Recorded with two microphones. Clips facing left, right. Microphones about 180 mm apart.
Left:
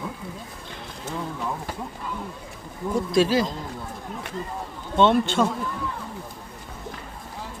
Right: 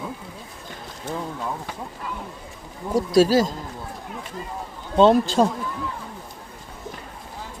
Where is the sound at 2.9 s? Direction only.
40° right (ahead or behind).